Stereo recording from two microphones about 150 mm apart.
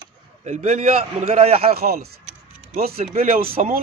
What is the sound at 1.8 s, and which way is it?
Speech, 90° right.